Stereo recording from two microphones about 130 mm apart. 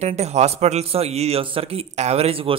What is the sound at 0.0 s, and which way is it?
Speech, 60° right (ahead or behind).